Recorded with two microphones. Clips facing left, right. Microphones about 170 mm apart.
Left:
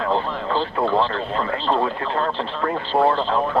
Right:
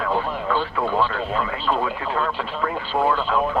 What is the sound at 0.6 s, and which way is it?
Speech, 30° left (ahead or behind).